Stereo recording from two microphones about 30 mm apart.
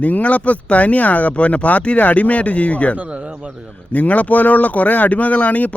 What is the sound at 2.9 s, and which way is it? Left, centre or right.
Speech, right.